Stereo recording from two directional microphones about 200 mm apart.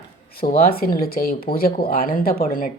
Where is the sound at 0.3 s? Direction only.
50° left (ahead or behind).